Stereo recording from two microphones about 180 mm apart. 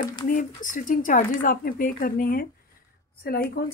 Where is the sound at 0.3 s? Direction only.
45° left (ahead or behind).